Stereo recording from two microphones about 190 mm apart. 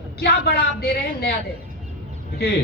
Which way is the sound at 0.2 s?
55° left (ahead or behind).